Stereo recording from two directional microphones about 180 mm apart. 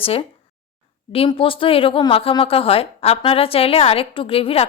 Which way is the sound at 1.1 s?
30° left (ahead or behind).